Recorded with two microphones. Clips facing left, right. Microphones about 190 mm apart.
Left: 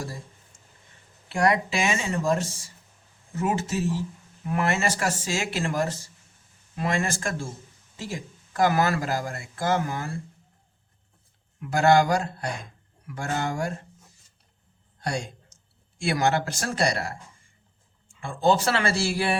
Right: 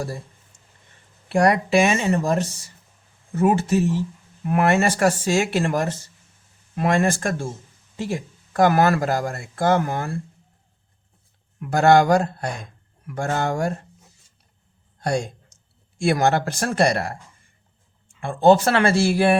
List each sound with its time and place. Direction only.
1.3 s speech: 55° right (ahead or behind)
11.6 s speech: 55° right (ahead or behind)
15.0 s speech: 50° right (ahead or behind)
18.2 s speech: 60° right (ahead or behind)